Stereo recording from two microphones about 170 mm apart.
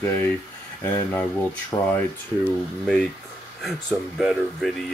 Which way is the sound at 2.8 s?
5° left (ahead or behind).